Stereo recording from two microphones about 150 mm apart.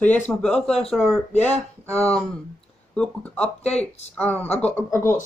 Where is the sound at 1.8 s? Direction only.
15° right (ahead or behind).